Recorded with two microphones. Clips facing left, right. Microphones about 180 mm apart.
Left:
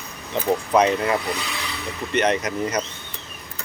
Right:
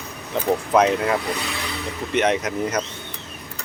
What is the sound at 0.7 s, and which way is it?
Speech, centre (ahead or behind).